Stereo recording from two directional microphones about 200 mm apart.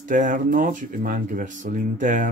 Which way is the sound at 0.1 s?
40° right (ahead or behind).